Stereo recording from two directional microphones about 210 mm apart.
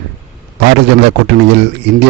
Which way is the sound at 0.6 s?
55° right (ahead or behind).